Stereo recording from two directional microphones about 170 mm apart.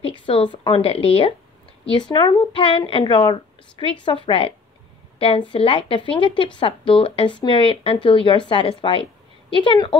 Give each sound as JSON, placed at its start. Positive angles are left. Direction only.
{"t": 0.0, "sound": "a woman's voice", "side_deg": 30}